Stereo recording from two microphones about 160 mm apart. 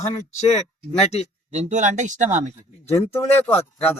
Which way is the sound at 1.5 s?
45° right (ahead or behind).